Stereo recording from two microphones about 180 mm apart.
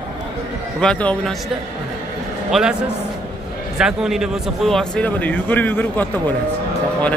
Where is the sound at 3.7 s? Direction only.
5° right (ahead or behind).